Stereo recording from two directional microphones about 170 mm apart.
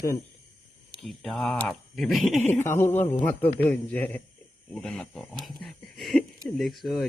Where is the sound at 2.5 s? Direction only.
15° left (ahead or behind).